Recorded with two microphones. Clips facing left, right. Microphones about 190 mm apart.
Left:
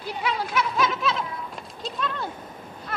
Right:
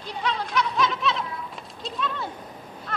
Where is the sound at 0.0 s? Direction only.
5° left (ahead or behind).